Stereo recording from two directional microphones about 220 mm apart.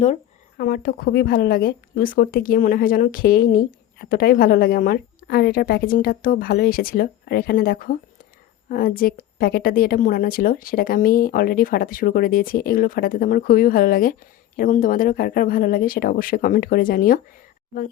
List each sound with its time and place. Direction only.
0.0 s a woman's voice: 35° left (ahead or behind)